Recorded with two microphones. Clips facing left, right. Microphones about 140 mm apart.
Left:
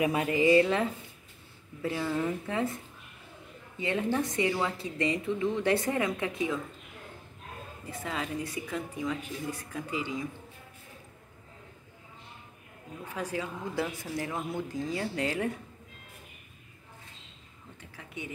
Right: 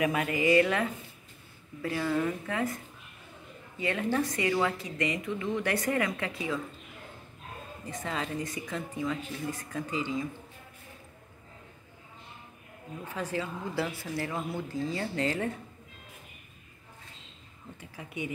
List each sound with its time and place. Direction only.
0.0 s a woman's voice: 30° left (ahead or behind)
3.8 s a woman's voice: 20° left (ahead or behind)
7.9 s a woman's voice: 5° left (ahead or behind)
13.1 s a woman's voice: 10° left (ahead or behind)
17.7 s a woman's voice: 10° right (ahead or behind)